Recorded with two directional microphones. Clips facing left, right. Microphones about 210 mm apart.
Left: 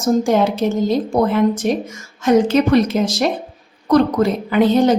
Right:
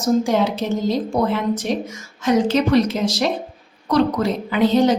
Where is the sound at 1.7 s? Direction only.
50° left (ahead or behind).